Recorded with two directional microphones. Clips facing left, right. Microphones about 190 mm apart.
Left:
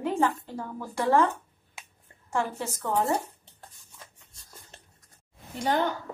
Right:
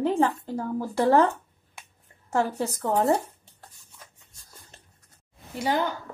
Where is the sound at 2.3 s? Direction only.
40° right (ahead or behind).